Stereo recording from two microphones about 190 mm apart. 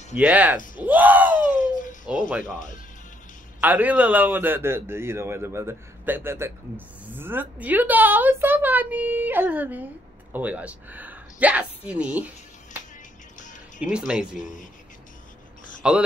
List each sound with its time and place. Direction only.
0.1 s a man's voice: 5° right (ahead or behind)
1.5 s a sound: 45° left (ahead or behind)
3.6 s a man's voice: 10° right (ahead or behind)
13.7 s speech: 5° right (ahead or behind)
14.4 s speech: 40° left (ahead or behind)
15.8 s speech: 5° right (ahead or behind)